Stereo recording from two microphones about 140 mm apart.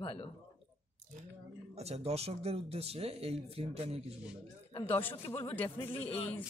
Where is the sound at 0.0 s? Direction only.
35° left (ahead or behind).